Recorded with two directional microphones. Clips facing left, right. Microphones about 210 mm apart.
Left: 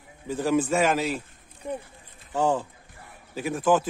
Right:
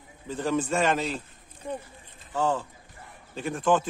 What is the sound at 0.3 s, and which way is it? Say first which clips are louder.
Speech: left 3 dB; 10° left (ahead or behind).